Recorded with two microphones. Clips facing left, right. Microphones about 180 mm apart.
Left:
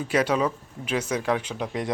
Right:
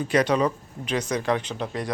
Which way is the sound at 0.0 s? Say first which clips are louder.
Right 2 dB; 5° left (ahead or behind).